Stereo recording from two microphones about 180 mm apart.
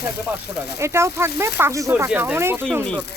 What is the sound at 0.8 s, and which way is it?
Speech, 15° right (ahead or behind).